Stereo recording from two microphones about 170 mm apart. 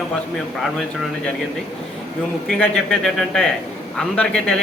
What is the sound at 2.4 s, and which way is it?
A man's voice, 5° left (ahead or behind).